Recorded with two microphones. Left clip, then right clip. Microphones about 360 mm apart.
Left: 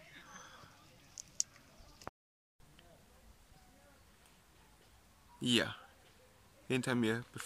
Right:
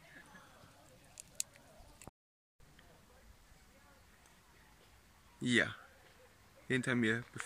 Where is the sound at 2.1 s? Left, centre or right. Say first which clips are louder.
Left 11 dB; left.